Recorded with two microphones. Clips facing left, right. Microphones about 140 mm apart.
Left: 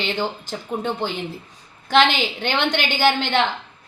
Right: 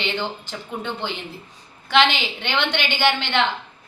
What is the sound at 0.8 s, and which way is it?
Speech, 40° left (ahead or behind).